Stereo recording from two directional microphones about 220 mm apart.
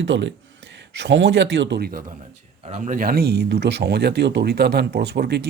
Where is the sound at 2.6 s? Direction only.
30° right (ahead or behind).